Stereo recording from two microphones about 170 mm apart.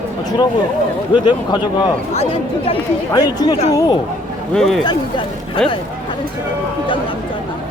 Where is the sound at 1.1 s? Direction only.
25° left (ahead or behind).